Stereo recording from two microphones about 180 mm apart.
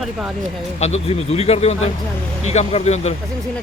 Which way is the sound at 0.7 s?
40° left (ahead or behind).